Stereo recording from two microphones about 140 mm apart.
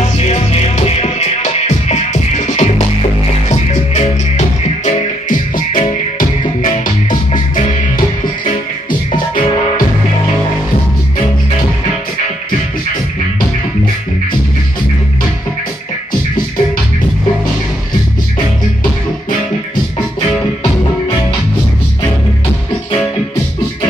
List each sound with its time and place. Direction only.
0.2 s music: 50° left (ahead or behind); by 7.6 s 70° left (ahead or behind)
9.1 s music: 75° left (ahead or behind)